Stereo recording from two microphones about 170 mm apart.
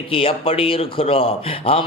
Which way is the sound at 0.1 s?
35° left (ahead or behind).